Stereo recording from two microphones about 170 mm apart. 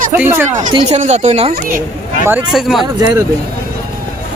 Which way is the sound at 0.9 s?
40° right (ahead or behind).